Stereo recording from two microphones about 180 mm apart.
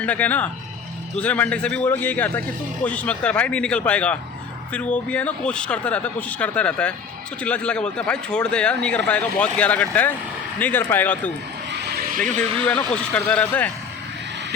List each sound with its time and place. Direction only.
0.0 s a man's voice: 10° left (ahead or behind)